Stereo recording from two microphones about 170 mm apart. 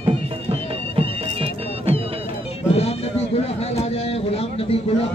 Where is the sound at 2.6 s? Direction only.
35° left (ahead or behind).